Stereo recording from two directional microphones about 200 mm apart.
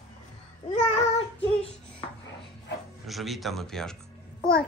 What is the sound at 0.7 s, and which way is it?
Child singing, 30° left (ahead or behind).